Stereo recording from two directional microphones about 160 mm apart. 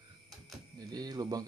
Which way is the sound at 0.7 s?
25° right (ahead or behind).